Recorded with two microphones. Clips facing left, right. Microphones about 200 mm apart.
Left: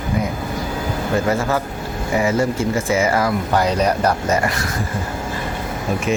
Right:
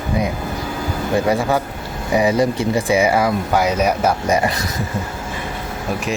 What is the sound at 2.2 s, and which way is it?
Speech, 15° right (ahead or behind).